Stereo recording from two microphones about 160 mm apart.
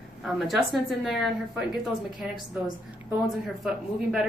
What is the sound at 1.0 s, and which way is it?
Speech, centre (ahead or behind).